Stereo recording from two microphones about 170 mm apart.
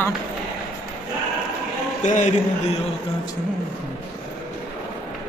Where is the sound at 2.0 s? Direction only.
45° left (ahead or behind).